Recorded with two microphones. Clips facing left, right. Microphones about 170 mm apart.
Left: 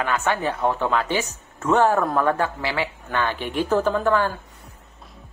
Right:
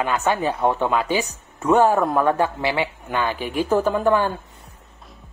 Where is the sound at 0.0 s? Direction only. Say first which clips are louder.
Right 2 dB; 15° right (ahead or behind).